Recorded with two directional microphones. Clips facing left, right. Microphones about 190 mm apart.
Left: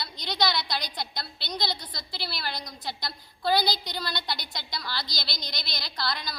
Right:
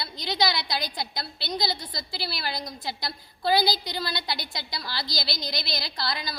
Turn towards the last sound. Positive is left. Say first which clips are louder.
# right 1 dB
turn(degrees=-5)  # may be behind; listen again after turning